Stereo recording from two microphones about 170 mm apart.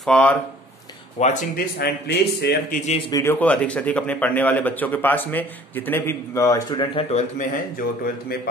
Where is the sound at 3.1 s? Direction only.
15° left (ahead or behind).